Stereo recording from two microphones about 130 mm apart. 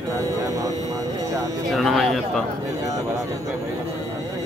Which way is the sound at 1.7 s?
Centre (ahead or behind).